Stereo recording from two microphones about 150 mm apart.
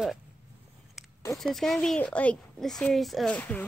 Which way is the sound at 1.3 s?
Centre (ahead or behind).